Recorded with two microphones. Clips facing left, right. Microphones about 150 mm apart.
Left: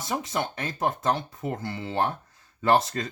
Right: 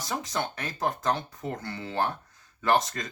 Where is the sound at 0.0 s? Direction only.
25° left (ahead or behind).